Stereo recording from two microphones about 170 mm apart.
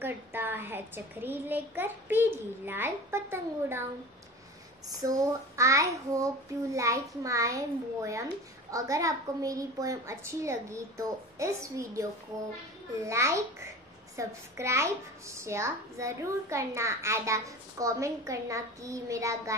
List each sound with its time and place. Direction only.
0.0 s a child's voice: 10° right (ahead or behind)
5.0 s a child's voice: 20° right (ahead or behind)